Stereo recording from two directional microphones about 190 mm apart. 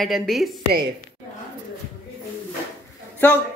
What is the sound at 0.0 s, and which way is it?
Speech, centre (ahead or behind).